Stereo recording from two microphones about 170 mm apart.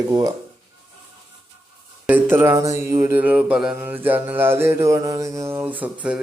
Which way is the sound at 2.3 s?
15° right (ahead or behind).